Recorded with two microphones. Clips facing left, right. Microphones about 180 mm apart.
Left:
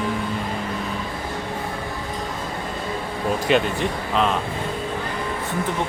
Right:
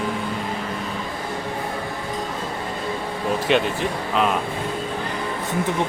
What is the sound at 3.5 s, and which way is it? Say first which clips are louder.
Speech: even; centre (ahead or behind).